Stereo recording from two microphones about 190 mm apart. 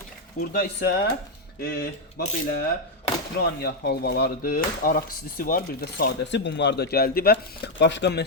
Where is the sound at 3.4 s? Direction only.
55° left (ahead or behind).